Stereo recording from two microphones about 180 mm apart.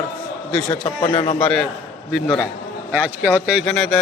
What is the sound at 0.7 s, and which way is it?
Speech, 25° left (ahead or behind).